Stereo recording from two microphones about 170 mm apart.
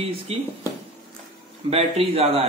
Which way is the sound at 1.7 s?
35° right (ahead or behind).